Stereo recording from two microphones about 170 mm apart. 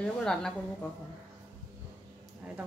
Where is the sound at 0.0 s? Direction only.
5° left (ahead or behind).